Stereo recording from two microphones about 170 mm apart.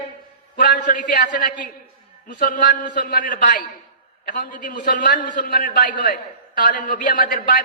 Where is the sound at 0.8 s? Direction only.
50° left (ahead or behind).